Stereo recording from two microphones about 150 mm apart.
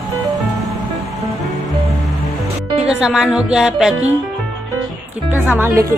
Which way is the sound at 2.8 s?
5° right (ahead or behind).